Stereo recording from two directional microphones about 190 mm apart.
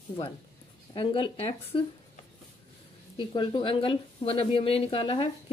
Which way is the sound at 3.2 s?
25° left (ahead or behind).